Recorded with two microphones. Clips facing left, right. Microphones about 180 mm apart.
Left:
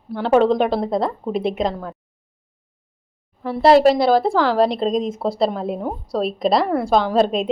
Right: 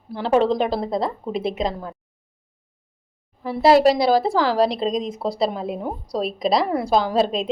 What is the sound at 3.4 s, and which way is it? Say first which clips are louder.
Speech: left 2 dB; 5° right (ahead or behind).